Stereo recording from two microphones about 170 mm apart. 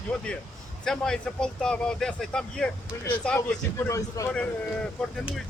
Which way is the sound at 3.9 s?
20° left (ahead or behind).